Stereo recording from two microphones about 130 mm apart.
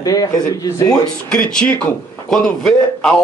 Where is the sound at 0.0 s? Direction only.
30° left (ahead or behind).